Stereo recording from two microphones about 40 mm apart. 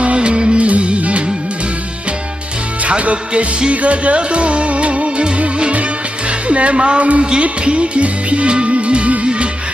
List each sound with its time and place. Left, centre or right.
0.0 s music: right
2.8 s music: right